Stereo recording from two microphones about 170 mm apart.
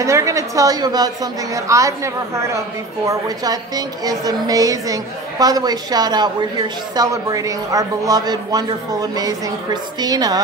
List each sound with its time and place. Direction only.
0.0 s speech: 20° right (ahead or behind)